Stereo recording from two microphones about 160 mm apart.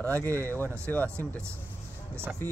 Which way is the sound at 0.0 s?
10° left (ahead or behind).